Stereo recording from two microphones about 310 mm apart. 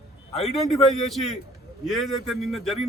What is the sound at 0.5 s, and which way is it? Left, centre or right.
A man's voice, centre.